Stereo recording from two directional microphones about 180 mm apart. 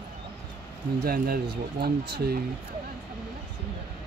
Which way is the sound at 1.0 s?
55° right (ahead or behind).